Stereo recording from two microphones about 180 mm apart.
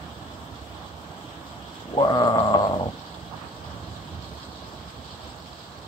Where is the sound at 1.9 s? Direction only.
25° left (ahead or behind).